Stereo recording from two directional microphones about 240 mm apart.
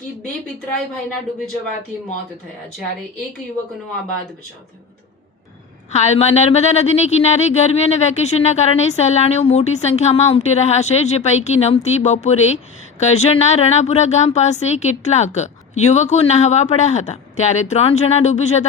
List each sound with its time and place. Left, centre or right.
0.2 s speech: centre
5.9 s speech: left